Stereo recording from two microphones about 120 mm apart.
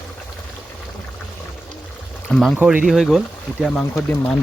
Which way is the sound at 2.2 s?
Centre (ahead or behind).